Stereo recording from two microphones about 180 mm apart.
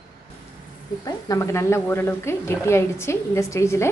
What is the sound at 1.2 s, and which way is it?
A woman's voice, 15° left (ahead or behind).